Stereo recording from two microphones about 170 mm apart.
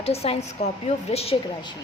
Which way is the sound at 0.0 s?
35° left (ahead or behind).